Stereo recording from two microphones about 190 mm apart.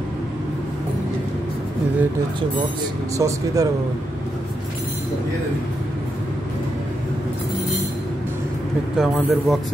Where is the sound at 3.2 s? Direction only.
15° right (ahead or behind).